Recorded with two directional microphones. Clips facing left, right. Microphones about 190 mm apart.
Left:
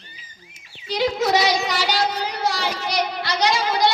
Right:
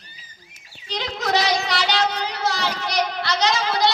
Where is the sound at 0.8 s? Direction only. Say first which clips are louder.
Left 6 dB; 10° left (ahead or behind).